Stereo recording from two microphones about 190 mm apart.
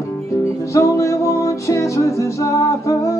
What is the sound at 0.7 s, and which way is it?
Music, 15° left (ahead or behind).